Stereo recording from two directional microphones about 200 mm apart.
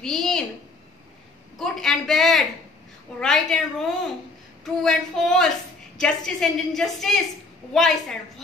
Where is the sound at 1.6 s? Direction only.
Centre (ahead or behind).